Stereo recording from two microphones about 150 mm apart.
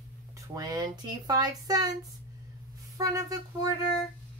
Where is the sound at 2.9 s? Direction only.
25° right (ahead or behind).